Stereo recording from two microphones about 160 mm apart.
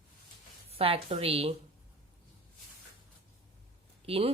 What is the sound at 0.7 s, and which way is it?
Speech, 35° right (ahead or behind).